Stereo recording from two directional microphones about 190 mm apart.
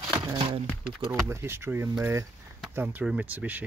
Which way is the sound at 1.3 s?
15° right (ahead or behind).